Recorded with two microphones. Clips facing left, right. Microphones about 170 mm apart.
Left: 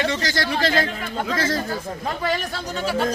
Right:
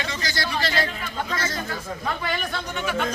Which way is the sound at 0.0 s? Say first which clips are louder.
Left 6 dB; 70° left (ahead or behind).